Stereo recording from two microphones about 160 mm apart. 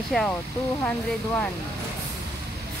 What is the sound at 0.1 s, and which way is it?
Speech, 5° left (ahead or behind).